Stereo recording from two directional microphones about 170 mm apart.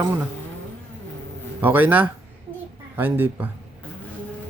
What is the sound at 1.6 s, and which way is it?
Speech, 10° right (ahead or behind).